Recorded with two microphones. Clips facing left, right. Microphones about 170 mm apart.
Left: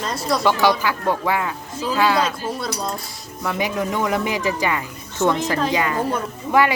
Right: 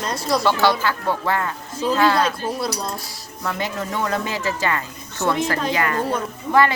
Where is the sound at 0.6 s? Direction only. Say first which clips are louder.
Left 1 dB; 15° left (ahead or behind).